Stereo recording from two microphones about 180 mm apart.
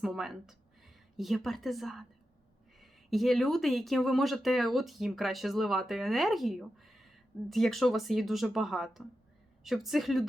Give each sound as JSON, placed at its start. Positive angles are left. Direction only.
{"t": 0.0, "sound": "speech", "side_deg": 0}